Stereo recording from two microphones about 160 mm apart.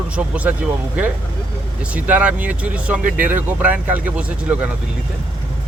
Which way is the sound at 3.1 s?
60° right (ahead or behind).